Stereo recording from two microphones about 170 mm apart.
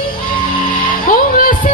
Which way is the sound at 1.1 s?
55° left (ahead or behind).